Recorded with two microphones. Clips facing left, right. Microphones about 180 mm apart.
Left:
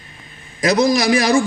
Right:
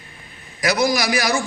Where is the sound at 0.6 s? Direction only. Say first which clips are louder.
Left 4 dB; 25° left (ahead or behind).